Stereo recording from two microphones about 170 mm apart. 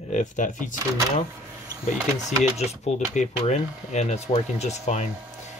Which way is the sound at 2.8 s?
45° left (ahead or behind).